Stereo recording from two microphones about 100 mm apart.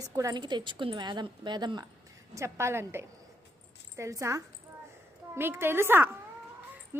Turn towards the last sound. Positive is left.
turn(degrees=-25)  # may be behind; listen again after turning